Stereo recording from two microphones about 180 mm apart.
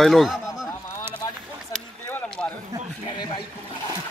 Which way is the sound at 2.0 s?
10° left (ahead or behind).